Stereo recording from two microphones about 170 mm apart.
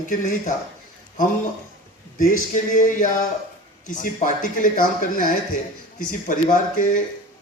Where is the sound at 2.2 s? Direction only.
50° left (ahead or behind).